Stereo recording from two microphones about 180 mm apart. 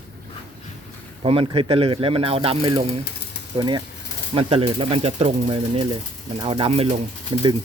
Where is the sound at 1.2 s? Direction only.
30° right (ahead or behind).